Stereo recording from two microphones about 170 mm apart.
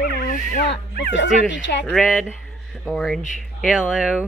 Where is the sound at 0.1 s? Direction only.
60° left (ahead or behind); by 1.9 s 90° left.